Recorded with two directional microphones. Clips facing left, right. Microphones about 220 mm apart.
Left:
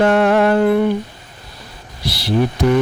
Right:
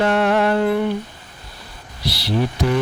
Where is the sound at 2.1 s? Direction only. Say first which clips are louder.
Left 3 dB; 50° left (ahead or behind).